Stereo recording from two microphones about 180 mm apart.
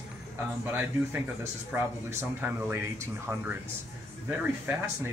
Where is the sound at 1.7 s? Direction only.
10° right (ahead or behind).